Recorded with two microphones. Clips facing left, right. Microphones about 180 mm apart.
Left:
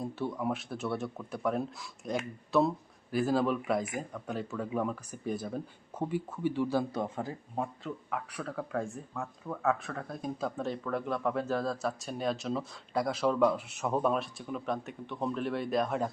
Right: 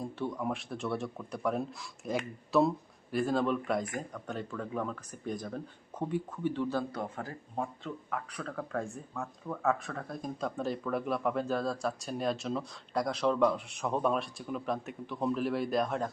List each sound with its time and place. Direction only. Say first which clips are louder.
0.0 s speech: left 1 dB; centre (ahead or behind); by 7.3 s 20° left (ahead or behind)
7.5 s speech: right 1 dB; 5° left (ahead or behind)